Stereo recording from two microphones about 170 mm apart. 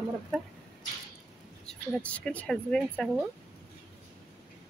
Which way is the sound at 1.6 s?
10° left (ahead or behind).